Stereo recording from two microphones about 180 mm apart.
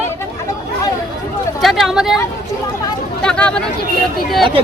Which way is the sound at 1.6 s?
Centre (ahead or behind).